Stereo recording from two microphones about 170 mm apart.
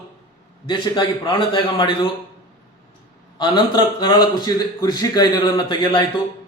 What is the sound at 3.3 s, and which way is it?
A man's voice, 25° left (ahead or behind).